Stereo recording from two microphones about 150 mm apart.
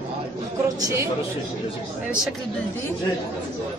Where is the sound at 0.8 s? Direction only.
20° right (ahead or behind).